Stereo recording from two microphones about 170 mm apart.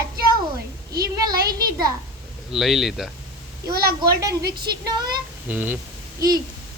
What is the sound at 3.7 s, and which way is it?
Child singing, 65° right (ahead or behind).